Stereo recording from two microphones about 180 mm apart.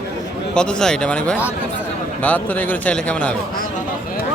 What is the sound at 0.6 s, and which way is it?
A man's voice, 5° left (ahead or behind).